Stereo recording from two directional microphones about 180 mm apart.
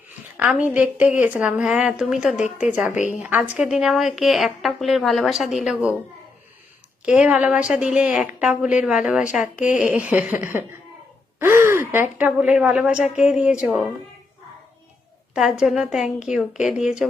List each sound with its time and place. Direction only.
0.3 s a woman's voice: 5° right (ahead or behind)
2.9 s a woman's voice: 45° left (ahead or behind)
3.2 s a woman's voice: 10° right (ahead or behind)
7.0 s a woman's voice: 5° right (ahead or behind)
15.4 s a woman's voice: 5° right (ahead or behind)